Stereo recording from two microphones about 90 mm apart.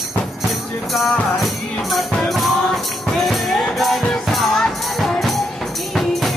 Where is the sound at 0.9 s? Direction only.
Centre (ahead or behind).